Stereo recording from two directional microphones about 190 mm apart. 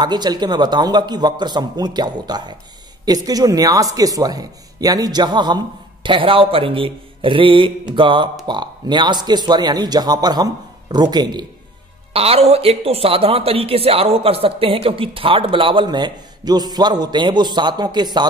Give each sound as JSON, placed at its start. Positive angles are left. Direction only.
{"t": 0.0, "sound": "a woman's voice", "side_deg": -20}